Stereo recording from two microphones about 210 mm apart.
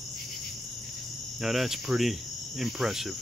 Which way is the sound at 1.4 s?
Centre (ahead or behind).